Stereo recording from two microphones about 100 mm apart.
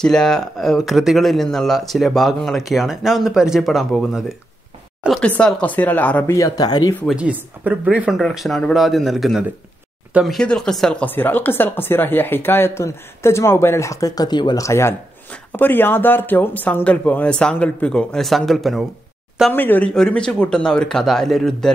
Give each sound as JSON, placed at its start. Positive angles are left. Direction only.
{"t": 0.0, "sound": "speech", "side_deg": 5}
{"t": 5.1, "sound": "speech", "side_deg": 10}
{"t": 6.2, "sound": "speech", "side_deg": 30}
{"t": 7.2, "sound": "speech", "side_deg": -15}
{"t": 8.2, "sound": "speech", "side_deg": 5}
{"t": 11.1, "sound": "speech", "side_deg": 20}
{"t": 14.6, "sound": "speech", "side_deg": 30}
{"t": 19.5, "sound": "speech", "side_deg": 20}
{"t": 19.9, "sound": "speech", "side_deg": 10}